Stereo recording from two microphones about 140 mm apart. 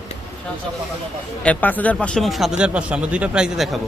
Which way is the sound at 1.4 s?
10° left (ahead or behind).